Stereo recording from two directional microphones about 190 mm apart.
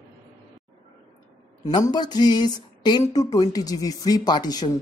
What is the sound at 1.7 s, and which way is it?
Speech, 20° left (ahead or behind).